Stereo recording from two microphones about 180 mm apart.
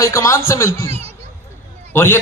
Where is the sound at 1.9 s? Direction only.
15° left (ahead or behind).